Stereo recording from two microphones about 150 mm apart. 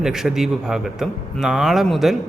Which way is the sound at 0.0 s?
5° right (ahead or behind).